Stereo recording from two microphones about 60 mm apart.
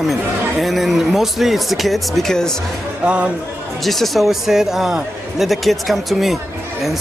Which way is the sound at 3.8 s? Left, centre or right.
Centre.